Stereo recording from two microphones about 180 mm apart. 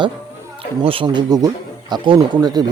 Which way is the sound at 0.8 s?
30° right (ahead or behind).